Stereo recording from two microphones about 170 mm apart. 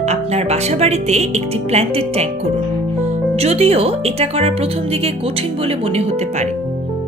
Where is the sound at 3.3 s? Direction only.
35° right (ahead or behind).